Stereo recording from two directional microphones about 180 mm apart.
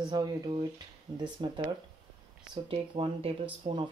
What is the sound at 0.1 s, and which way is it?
Speech, 25° right (ahead or behind).